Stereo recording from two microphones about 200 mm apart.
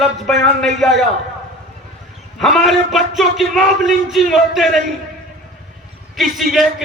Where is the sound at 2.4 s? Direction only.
Centre (ahead or behind).